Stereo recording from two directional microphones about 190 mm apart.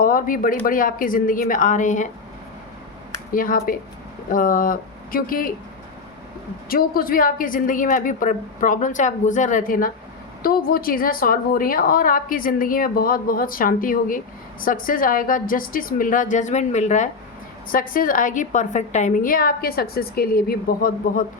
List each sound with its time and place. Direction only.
0.0 s a woman's voice: 45° left (ahead or behind)
3.3 s a woman's voice: 50° left (ahead or behind)
6.7 s a woman's voice: 50° left (ahead or behind)